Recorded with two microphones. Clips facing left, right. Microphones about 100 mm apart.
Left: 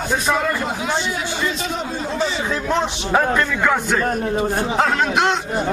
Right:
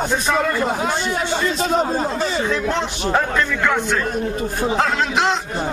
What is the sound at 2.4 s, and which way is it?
A man's voice, 5° left (ahead or behind).